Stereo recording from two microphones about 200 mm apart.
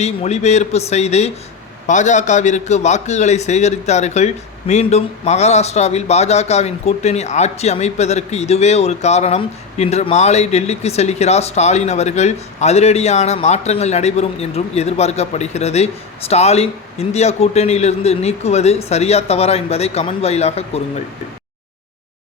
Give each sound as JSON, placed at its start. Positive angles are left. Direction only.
{"t": 0.0, "sound": "a man's voice", "side_deg": 35}